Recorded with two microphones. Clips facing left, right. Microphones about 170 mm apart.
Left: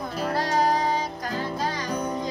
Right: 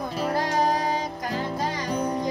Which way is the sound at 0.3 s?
15° right (ahead or behind).